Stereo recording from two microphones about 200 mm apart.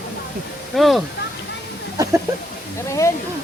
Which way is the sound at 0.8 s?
Centre (ahead or behind).